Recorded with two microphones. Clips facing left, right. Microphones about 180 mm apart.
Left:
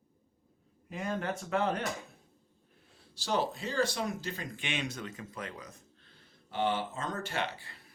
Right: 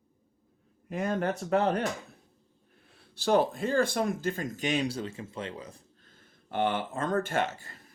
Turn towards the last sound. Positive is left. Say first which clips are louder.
# right 6 dB
turn(degrees=-45)  # may be behind; listen again after turning